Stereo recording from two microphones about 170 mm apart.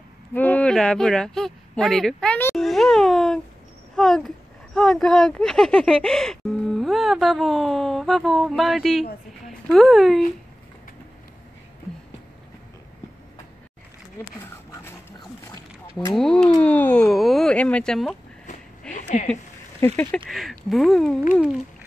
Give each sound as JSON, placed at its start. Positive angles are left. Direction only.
{"t": 0.3, "sound": "speech", "side_deg": 10}
{"t": 3.9, "sound": "a sound", "side_deg": 0}
{"t": 4.7, "sound": "speech", "side_deg": 5}
{"t": 16.2, "sound": "speech", "side_deg": 5}
{"t": 19.0, "sound": "speech", "side_deg": 35}
{"t": 20.2, "sound": "speech", "side_deg": 0}